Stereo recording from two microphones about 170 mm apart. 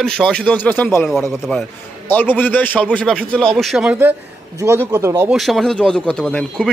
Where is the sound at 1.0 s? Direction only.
Centre (ahead or behind).